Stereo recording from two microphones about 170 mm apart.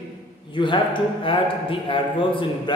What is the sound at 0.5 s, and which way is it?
A man's voice, 30° left (ahead or behind).